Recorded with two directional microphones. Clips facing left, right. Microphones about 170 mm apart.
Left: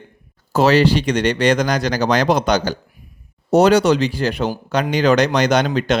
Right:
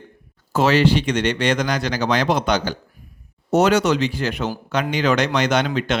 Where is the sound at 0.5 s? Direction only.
35° left (ahead or behind).